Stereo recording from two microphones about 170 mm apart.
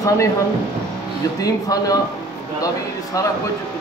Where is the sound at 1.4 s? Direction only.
20° left (ahead or behind).